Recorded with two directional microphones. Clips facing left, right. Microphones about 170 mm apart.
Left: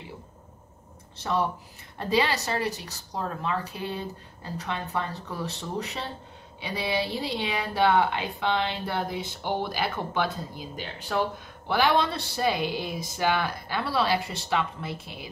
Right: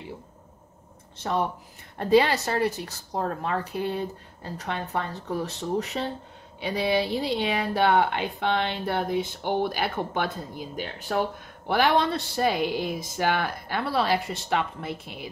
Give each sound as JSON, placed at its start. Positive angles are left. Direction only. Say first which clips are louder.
{"t": 1.1, "sound": "speech", "louder": "even", "side_deg": -50}